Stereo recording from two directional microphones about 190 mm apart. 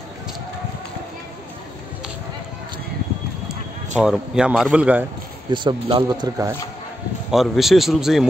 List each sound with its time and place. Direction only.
4.0 s a man's voice: 5° right (ahead or behind)
5.5 s speech: 25° right (ahead or behind)
7.2 s a man's voice: centre (ahead or behind)